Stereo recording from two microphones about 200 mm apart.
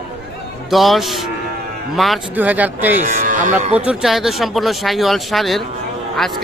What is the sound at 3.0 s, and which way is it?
Speech, 40° right (ahead or behind).